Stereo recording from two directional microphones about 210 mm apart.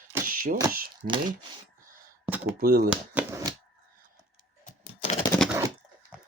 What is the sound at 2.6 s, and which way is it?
Speech, 45° right (ahead or behind).